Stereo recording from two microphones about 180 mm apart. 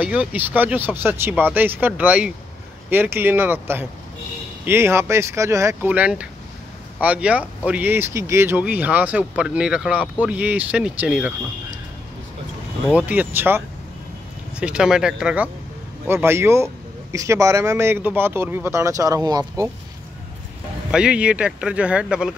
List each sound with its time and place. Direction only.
0.0 s speech: 5° right (ahead or behind)
12.9 s speech: 10° right (ahead or behind)
14.6 s speech: 5° right (ahead or behind); by 19.7 s 20° right (ahead or behind)
20.9 s speech: 5° right (ahead or behind)